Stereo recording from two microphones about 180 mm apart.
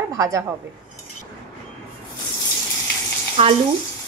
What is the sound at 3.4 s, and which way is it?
Frying, 30° right (ahead or behind).